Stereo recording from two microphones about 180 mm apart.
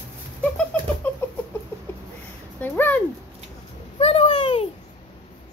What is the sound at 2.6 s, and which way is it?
Speech, 10° left (ahead or behind).